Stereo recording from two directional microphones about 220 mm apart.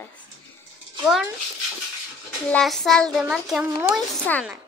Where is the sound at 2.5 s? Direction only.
Centre (ahead or behind).